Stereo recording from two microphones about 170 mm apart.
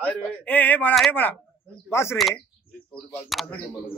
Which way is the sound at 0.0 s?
10° left (ahead or behind).